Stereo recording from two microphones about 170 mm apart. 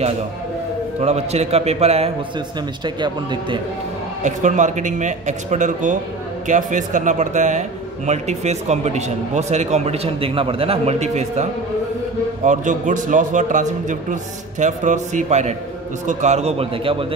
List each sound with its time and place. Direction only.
1.0 s speech: 40° right (ahead or behind)
2.8 s speech: 25° right (ahead or behind)
4.2 s speech: 45° right (ahead or behind)
12.4 s speech: 50° right (ahead or behind)